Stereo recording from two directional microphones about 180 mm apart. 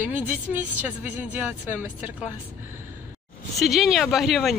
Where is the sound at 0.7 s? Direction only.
10° right (ahead or behind).